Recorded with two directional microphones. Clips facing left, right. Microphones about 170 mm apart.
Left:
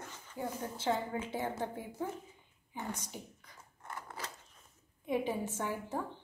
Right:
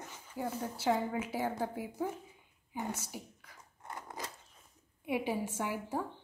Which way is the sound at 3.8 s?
20° right (ahead or behind).